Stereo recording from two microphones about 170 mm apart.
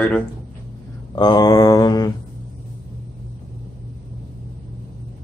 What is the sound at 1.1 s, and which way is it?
Speech, 25° left (ahead or behind).